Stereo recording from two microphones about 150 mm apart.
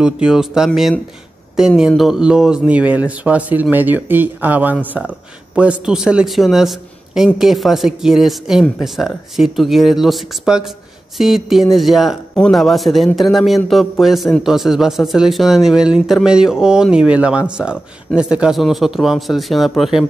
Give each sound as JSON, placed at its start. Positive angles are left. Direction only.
{"t": 0.0, "sound": "speech", "side_deg": -5}